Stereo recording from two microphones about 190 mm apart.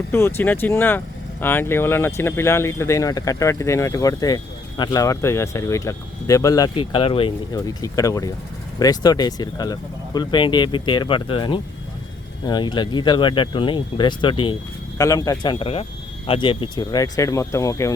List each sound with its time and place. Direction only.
0.1 s speech: 10° left (ahead or behind)